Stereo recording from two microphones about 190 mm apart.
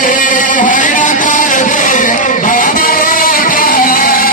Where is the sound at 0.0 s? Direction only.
45° left (ahead or behind).